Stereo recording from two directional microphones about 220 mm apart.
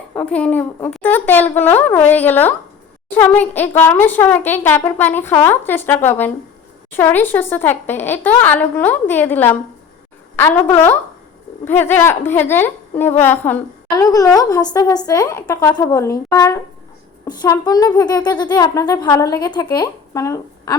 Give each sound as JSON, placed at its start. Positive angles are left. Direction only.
{"t": 0.1, "sound": "a woman's voice", "side_deg": 5}